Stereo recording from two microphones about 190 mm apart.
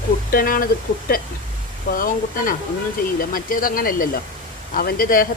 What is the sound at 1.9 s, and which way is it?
Speech, 45° left (ahead or behind).